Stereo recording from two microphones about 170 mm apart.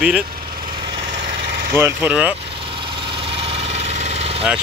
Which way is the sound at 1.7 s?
10° right (ahead or behind).